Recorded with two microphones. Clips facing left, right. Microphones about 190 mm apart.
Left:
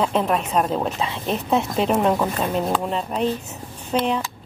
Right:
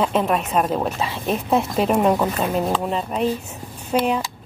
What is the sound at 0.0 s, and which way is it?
Speech, 5° right (ahead or behind).